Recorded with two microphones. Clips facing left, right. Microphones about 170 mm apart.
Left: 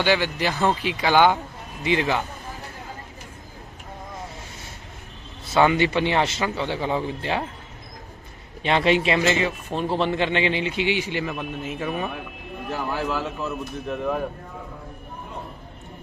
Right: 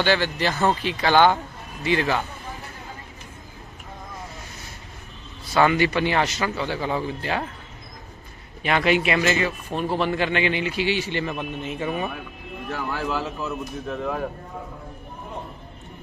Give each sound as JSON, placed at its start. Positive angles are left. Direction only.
{"t": 0.0, "sound": "speech", "side_deg": 10}
{"t": 5.5, "sound": "speech", "side_deg": 20}
{"t": 8.6, "sound": "a man's voice", "side_deg": 30}